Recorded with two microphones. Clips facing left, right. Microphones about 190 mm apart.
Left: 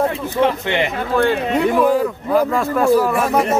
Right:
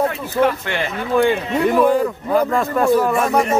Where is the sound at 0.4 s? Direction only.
20° left (ahead or behind).